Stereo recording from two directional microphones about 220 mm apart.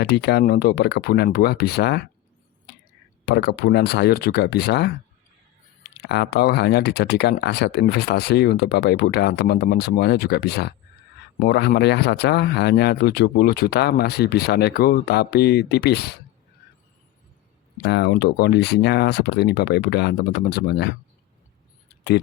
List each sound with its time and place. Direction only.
0.0 s speech: 50° left (ahead or behind)
3.2 s speech: 45° left (ahead or behind)
6.1 s speech: 50° left (ahead or behind)
17.8 s speech: 50° left (ahead or behind)